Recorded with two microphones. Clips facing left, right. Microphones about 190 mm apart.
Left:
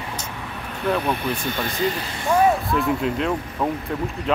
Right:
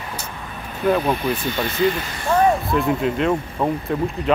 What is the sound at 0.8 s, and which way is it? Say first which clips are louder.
Speech: right 4 dB; 5° right (ahead or behind).